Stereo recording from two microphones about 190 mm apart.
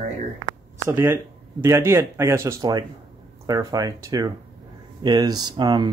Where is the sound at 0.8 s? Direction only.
10° right (ahead or behind).